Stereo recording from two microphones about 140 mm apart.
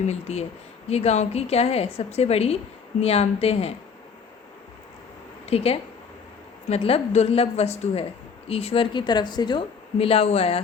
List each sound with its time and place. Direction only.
0.1 s a woman's voice: 50° left (ahead or behind)
5.5 s a woman's voice: 45° left (ahead or behind)